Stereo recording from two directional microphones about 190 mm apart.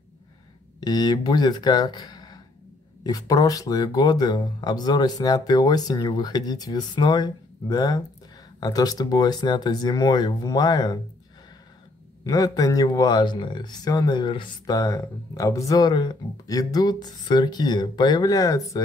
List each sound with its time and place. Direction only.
0.7 s speech: 20° left (ahead or behind)
12.3 s speech: 20° left (ahead or behind)